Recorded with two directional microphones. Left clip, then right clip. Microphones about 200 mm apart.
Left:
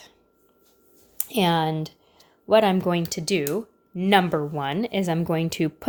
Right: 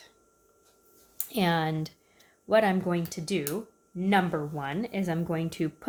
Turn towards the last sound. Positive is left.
turn(degrees=35)  # may be behind; listen again after turning